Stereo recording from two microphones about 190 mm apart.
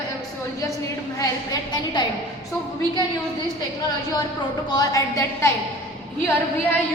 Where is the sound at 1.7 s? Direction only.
20° left (ahead or behind).